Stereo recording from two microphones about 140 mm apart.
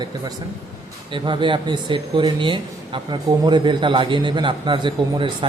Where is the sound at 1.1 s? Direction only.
35° right (ahead or behind).